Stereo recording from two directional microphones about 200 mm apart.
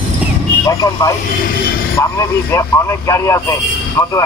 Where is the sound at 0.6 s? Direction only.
15° left (ahead or behind).